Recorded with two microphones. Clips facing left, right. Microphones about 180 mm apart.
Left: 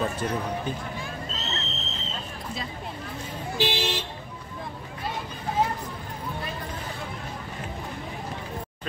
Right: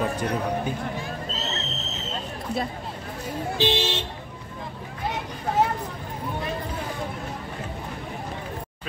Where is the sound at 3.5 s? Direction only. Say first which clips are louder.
Right 2 dB; 25° right (ahead or behind).